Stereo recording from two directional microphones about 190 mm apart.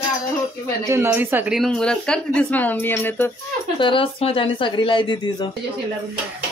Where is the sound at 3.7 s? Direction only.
25° left (ahead or behind).